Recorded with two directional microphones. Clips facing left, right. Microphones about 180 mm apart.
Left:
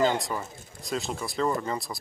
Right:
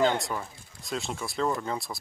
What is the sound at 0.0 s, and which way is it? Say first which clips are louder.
Speech: even; centre (ahead or behind).